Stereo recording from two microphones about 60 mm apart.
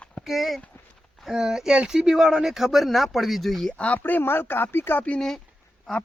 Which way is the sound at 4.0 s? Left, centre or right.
Left.